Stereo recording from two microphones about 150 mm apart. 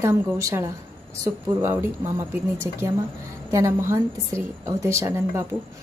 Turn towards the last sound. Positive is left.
turn(degrees=-20)  # may be behind; listen again after turning